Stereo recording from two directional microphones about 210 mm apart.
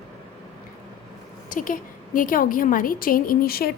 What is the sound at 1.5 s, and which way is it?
A woman's voice, 40° left (ahead or behind).